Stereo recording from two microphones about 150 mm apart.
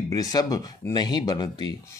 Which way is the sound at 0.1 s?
25° left (ahead or behind).